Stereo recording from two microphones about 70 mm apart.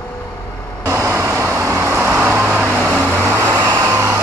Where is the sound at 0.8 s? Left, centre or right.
Right.